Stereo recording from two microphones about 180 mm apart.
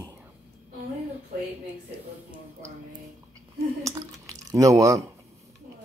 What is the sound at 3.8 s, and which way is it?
Drip, 20° right (ahead or behind).